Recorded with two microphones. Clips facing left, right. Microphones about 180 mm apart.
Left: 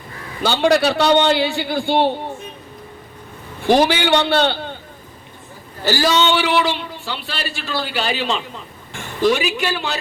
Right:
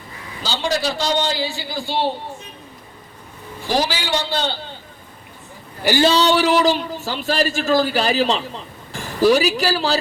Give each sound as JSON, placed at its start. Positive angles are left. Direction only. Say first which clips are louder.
{"t": 0.4, "sound": "a man's voice", "louder": "left 7 dB", "side_deg": 60}
{"t": 3.6, "sound": "a man's voice", "louder": "left 7 dB", "side_deg": 60}
{"t": 5.8, "sound": "a man's voice", "louder": "right 3 dB", "side_deg": -15}
{"t": 6.1, "sound": "a woman's voice", "louder": "even", "side_deg": -35}